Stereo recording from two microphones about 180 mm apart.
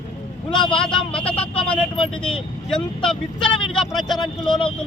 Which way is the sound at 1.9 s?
30° left (ahead or behind).